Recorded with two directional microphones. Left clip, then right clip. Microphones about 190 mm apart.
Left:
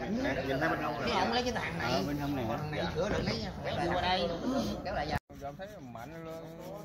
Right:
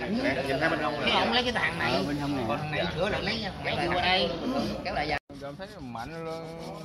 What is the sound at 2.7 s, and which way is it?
A man's voice, 30° left (ahead or behind).